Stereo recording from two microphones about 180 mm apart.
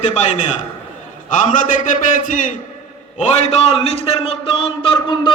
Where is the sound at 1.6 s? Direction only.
45° left (ahead or behind).